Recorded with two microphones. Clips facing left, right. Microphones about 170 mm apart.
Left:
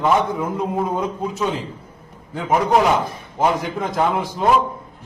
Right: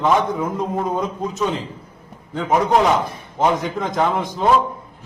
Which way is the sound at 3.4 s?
10° left (ahead or behind).